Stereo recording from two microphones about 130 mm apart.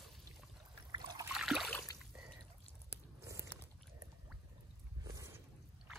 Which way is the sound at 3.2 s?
25° right (ahead or behind).